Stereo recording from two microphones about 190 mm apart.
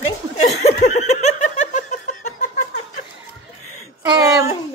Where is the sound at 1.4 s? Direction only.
40° left (ahead or behind).